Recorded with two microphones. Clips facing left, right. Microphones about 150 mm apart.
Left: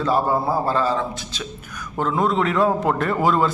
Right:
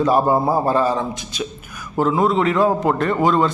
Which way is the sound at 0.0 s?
15° right (ahead or behind).